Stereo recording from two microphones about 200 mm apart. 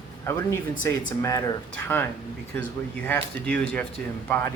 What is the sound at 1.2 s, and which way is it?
Speech, 15° left (ahead or behind).